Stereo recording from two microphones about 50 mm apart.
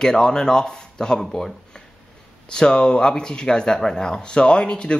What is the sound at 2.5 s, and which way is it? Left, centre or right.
Speech, centre.